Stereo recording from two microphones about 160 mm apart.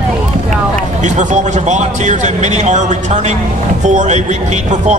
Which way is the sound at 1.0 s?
50° right (ahead or behind).